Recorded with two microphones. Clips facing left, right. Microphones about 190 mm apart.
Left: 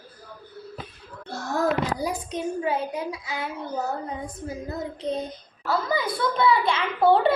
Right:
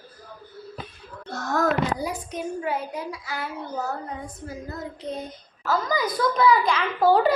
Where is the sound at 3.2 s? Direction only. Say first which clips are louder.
Left 1 dB; 20° left (ahead or behind).